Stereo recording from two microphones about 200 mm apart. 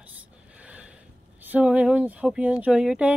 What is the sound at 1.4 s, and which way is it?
Speech, 5° right (ahead or behind).